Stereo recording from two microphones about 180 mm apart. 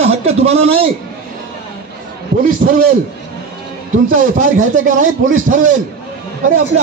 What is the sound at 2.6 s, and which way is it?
Speech, 55° right (ahead or behind).